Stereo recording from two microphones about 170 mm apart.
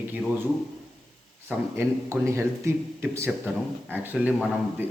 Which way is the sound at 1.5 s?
15° right (ahead or behind).